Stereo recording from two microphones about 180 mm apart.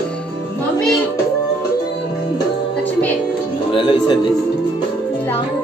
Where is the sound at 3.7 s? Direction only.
30° left (ahead or behind).